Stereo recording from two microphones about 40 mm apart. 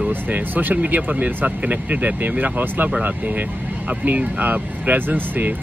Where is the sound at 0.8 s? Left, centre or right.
Right.